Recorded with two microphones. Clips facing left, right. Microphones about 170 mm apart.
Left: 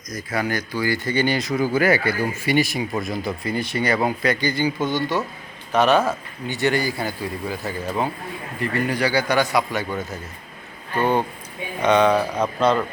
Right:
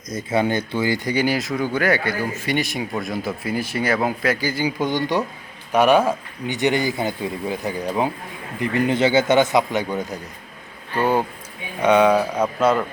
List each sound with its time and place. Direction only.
0.1 s a man's voice: 25° right (ahead or behind); by 12.8 s 5° right (ahead or behind)